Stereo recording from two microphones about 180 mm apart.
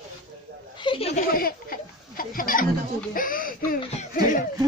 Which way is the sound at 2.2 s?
50° left (ahead or behind).